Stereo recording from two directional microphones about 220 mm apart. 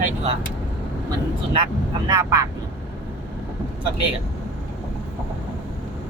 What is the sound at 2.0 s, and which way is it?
Speech, 15° right (ahead or behind).